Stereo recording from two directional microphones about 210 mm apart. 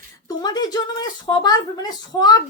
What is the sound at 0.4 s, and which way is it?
A woman's voice, 20° left (ahead or behind).